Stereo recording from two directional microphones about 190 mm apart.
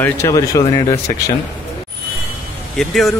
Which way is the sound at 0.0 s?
15° left (ahead or behind).